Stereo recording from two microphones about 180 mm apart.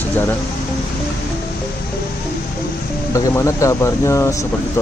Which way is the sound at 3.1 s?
15° left (ahead or behind).